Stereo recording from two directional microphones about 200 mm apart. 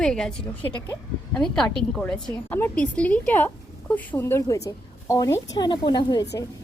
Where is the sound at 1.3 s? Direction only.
5° left (ahead or behind).